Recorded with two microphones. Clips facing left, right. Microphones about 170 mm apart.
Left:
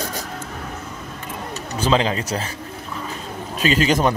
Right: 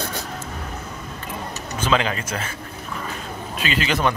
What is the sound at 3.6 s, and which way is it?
Speech, 40° left (ahead or behind).